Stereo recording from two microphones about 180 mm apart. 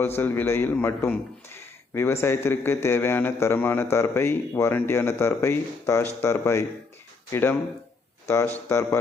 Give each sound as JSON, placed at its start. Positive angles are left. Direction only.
{"t": 0.2, "sound": "a man's voice", "side_deg": 10}
{"t": 8.7, "sound": "a man's voice", "side_deg": 15}